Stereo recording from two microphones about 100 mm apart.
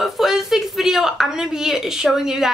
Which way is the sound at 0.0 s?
5° right (ahead or behind).